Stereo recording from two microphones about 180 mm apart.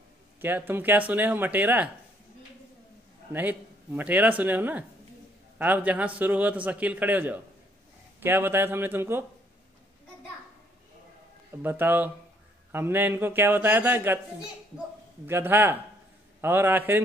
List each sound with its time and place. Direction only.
0.4 s a man's voice: 10° right (ahead or behind)
3.3 s a man's voice: 10° right (ahead or behind)
11.6 s a man's voice: 10° right (ahead or behind)
15.2 s a man's voice: 15° right (ahead or behind)